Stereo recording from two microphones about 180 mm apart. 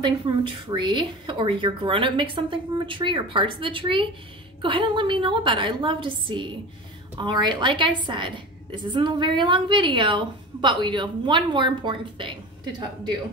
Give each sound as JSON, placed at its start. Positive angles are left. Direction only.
{"t": 0.0, "sound": "a woman's voice", "side_deg": -25}